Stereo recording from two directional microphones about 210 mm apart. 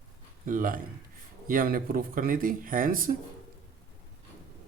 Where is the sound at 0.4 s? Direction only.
40° right (ahead or behind).